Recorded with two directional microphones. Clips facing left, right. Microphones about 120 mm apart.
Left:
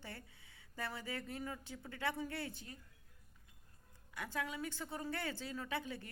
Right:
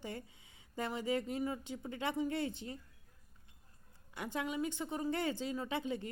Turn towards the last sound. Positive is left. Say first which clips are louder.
# right 5 dB
turn(degrees=-20)  # may be behind; listen again after turning